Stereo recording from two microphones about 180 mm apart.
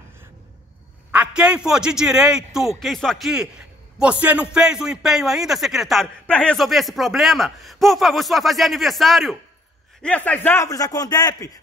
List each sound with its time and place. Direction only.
1.1 s a man's voice: 5° right (ahead or behind); by 11.6 s 20° left (ahead or behind)